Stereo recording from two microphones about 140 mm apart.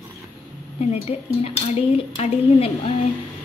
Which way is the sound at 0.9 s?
45° left (ahead or behind).